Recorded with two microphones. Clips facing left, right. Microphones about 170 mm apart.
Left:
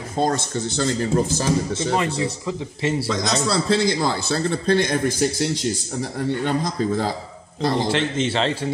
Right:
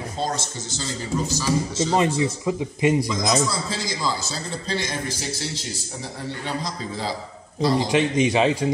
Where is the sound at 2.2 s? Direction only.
15° right (ahead or behind).